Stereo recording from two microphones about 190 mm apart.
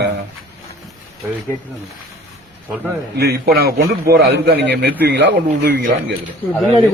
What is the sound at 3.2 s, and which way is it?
A man's voice, 60° right (ahead or behind).